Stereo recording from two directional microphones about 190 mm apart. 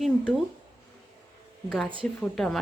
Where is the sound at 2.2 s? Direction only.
Centre (ahead or behind).